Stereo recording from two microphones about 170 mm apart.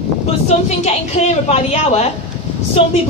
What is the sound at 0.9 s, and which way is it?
A man's voice, 40° left (ahead or behind).